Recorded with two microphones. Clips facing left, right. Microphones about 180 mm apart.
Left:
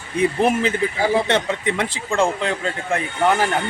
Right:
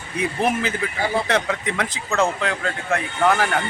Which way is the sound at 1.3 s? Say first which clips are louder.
Left 2 dB; 25° left (ahead or behind).